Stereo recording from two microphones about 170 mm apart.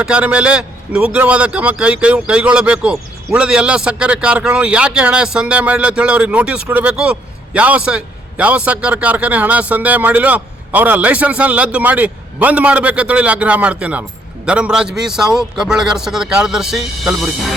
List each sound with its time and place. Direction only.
0.0 s a man's voice: 5° right (ahead or behind)